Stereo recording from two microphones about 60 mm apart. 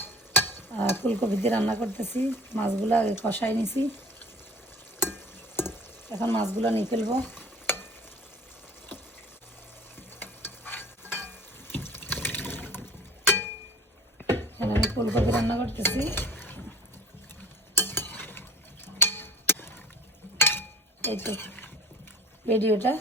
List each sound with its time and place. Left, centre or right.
0.0 s stir: left
1.9 s speech: left
4.9 s a sound: left
6.1 s speech: left
7.2 s stir: left
9.9 s stir: left
13.2 s a sound: left
14.3 s dishes: left
17.7 s stir: left
18.9 s a sound: left
22.4 s speech: left